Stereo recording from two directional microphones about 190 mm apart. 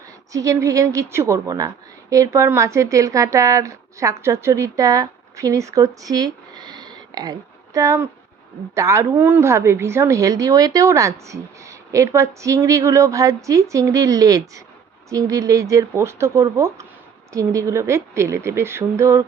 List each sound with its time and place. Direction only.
0.3 s a woman's voice: 15° right (ahead or behind)